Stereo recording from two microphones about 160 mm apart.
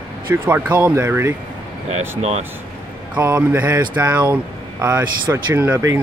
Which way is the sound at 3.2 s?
15° right (ahead or behind).